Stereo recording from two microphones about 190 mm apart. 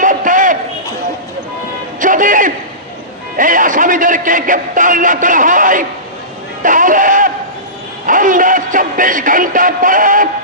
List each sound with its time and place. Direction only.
0.0 s a sound: 45° right (ahead or behind)
2.0 s music: 45° right (ahead or behind)
3.3 s a man's voice: 45° right (ahead or behind)
8.0 s music: 45° right (ahead or behind)